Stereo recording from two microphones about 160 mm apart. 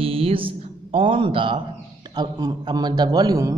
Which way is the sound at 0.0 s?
35° right (ahead or behind).